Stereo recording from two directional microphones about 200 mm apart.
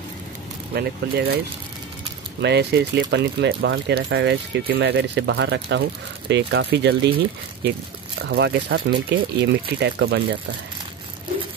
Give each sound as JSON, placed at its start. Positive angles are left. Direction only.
{"t": 0.7, "sound": "speech", "side_deg": -50}
{"t": 2.4, "sound": "speech", "side_deg": -60}
{"t": 8.3, "sound": "speech", "side_deg": -55}